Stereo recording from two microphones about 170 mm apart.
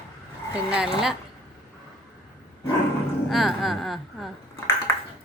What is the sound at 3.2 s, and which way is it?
Speech, centre (ahead or behind).